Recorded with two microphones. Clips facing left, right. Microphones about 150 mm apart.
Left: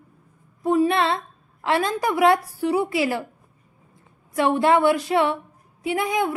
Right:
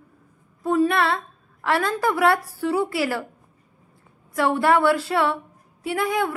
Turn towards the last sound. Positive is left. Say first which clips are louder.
# left 1 dB
turn(degrees=15)  # may be behind; listen again after turning